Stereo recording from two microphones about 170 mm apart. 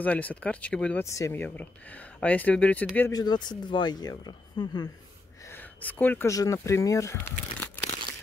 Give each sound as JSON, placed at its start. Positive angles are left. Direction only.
{"t": 0.0, "sound": "speech", "side_deg": 10}
{"t": 1.0, "sound": "speech", "side_deg": 15}
{"t": 3.1, "sound": "speech", "side_deg": 25}
{"t": 5.5, "sound": "speech", "side_deg": 10}